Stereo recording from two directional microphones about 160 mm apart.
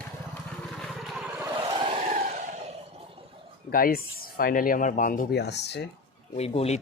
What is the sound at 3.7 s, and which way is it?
Speech, 65° left (ahead or behind).